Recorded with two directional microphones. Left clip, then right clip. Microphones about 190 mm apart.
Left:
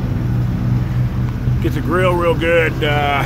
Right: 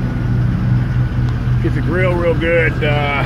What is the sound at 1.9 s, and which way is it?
Speech, 20° left (ahead or behind).